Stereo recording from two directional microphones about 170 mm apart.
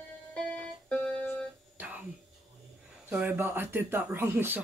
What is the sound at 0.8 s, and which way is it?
Music, 5° left (ahead or behind).